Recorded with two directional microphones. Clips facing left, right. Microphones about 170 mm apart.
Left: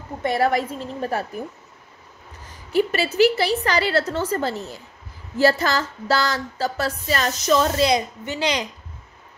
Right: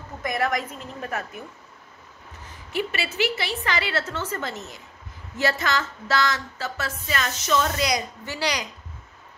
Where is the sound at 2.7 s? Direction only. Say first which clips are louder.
Left 8 dB; 40° left (ahead or behind); by 8.6 s 20° left (ahead or behind).